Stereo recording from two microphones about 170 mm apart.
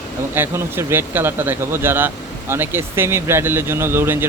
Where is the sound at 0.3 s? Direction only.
15° right (ahead or behind).